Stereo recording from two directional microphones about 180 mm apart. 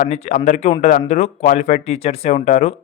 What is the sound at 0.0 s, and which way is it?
Speech, 40° left (ahead or behind).